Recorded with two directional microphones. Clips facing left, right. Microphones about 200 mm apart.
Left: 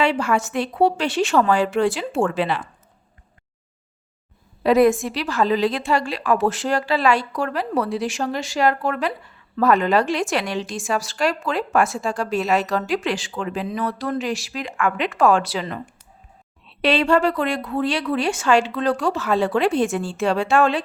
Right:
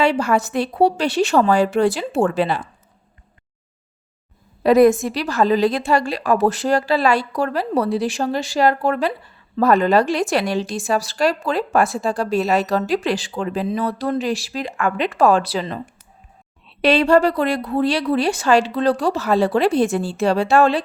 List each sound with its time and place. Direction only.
0.0 s a woman's voice: 40° right (ahead or behind)
4.6 s a woman's voice: 40° right (ahead or behind)
16.8 s a woman's voice: 40° right (ahead or behind)